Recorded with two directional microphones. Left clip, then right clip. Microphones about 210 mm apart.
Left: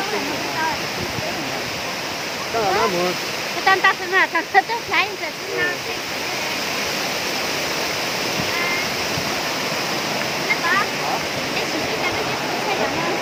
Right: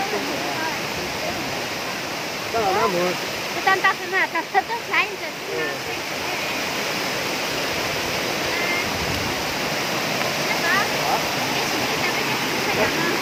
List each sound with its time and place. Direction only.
3.7 s speech: 45° left (ahead or behind)